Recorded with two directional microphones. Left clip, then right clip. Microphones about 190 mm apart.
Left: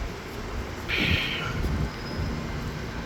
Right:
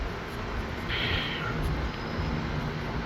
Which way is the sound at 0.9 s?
15° left (ahead or behind).